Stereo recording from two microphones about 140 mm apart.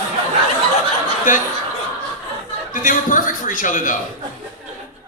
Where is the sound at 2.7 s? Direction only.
70° left (ahead or behind).